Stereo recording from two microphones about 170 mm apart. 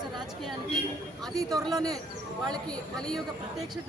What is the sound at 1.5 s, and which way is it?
Speech, 20° right (ahead or behind).